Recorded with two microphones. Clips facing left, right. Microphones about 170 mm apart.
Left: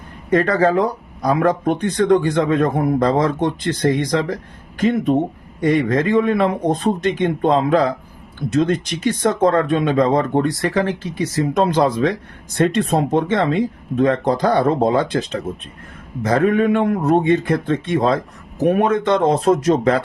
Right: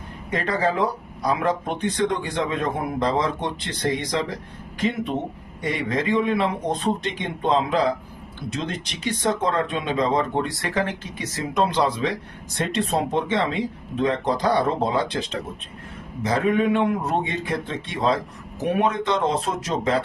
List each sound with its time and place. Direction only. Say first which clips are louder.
0.3 s speech: left 8 dB; 45° left (ahead or behind)
5.5 s speech: left 9 dB; 45° left (ahead or behind)
10.8 s speech: left 6 dB; 35° left (ahead or behind)